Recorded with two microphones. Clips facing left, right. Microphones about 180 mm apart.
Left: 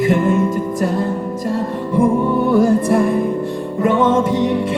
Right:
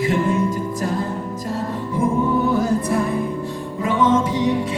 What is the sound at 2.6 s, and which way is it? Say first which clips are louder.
Music: left 6 dB; 50° left (ahead or behind).